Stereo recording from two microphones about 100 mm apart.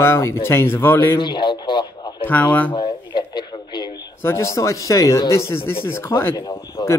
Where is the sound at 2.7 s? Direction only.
45° left (ahead or behind).